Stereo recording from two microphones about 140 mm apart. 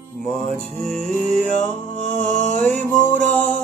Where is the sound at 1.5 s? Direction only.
60° left (ahead or behind).